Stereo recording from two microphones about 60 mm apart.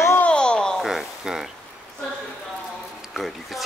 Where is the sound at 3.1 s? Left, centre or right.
Centre.